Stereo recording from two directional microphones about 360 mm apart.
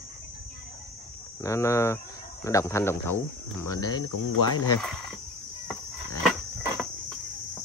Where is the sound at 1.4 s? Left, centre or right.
Centre.